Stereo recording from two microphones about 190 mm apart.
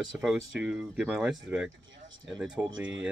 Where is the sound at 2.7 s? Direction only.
75° right (ahead or behind).